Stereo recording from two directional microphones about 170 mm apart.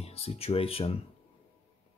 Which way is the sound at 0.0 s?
35° left (ahead or behind).